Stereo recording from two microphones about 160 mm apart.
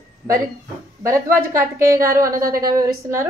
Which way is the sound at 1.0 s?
20° right (ahead or behind).